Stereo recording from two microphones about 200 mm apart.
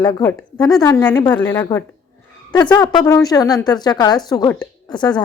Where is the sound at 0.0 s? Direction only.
15° left (ahead or behind).